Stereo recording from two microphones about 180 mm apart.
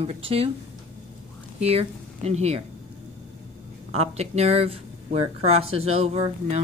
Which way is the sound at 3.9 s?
35° right (ahead or behind).